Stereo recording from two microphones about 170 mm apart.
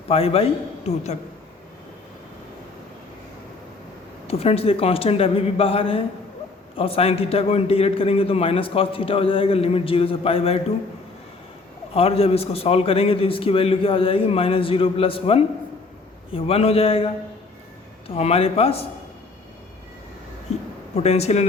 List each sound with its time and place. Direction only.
0.1 s a man's voice: 35° left (ahead or behind)
4.3 s a man's voice: 35° left (ahead or behind)
11.9 s a man's voice: 35° left (ahead or behind)
18.1 s a man's voice: 35° left (ahead or behind)
20.5 s a sound: 40° left (ahead or behind)